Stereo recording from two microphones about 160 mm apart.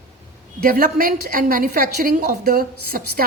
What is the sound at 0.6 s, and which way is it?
A woman's voice, 65° right (ahead or behind).